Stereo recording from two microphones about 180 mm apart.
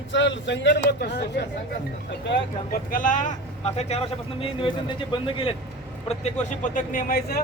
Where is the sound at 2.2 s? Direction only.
80° left.